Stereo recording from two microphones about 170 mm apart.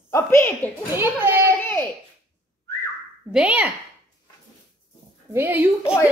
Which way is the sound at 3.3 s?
5° right (ahead or behind).